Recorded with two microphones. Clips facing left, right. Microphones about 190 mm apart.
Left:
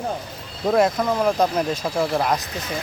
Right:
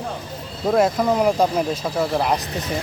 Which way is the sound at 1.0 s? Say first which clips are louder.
Right 2 dB; 15° right (ahead or behind).